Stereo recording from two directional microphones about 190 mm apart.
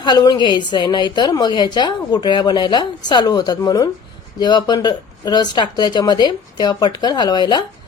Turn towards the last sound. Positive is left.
turn(degrees=20)  # may be behind; listen again after turning